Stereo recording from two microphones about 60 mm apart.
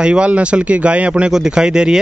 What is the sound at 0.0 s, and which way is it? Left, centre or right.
Speech, centre.